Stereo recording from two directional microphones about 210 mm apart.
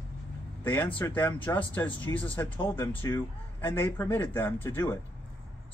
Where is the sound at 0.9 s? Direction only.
10° left (ahead or behind).